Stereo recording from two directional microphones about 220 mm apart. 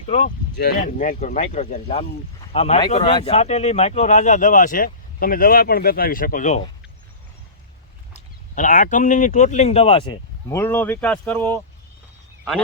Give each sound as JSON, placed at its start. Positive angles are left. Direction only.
{"t": 0.1, "sound": "speech", "side_deg": 35}
{"t": 0.5, "sound": "speech", "side_deg": 45}
{"t": 0.8, "sound": "speech", "side_deg": 35}
{"t": 8.1, "sound": "speech", "side_deg": 35}
{"t": 10.5, "sound": "speech", "side_deg": 10}